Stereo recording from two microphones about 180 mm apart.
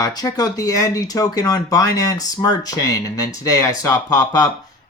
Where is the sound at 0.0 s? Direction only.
20° left (ahead or behind).